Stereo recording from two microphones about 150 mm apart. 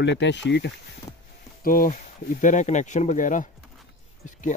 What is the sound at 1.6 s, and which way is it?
Speech, 65° left (ahead or behind).